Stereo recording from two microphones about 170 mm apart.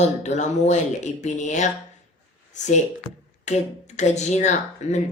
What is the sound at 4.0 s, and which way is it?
Speech, 40° left (ahead or behind).